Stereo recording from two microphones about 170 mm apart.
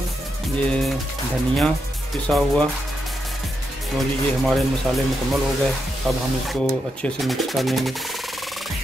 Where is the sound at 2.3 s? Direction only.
5° left (ahead or behind).